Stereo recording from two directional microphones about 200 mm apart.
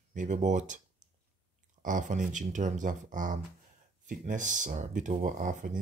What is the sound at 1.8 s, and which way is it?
Speech, 40° right (ahead or behind).